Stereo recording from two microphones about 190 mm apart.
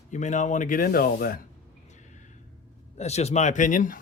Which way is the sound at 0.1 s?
40° left (ahead or behind).